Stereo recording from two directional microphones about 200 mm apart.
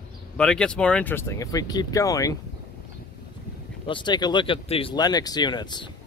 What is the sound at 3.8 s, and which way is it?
Speech, 25° left (ahead or behind).